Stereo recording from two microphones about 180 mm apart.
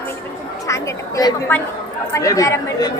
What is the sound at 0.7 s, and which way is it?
A woman's voice, 15° left (ahead or behind).